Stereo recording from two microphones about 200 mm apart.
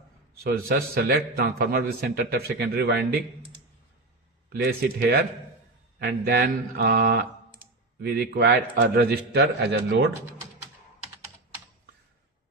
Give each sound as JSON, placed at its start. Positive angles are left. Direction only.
{"t": 0.4, "sound": "a man's voice", "side_deg": -45}
{"t": 4.4, "sound": "a man's voice", "side_deg": -50}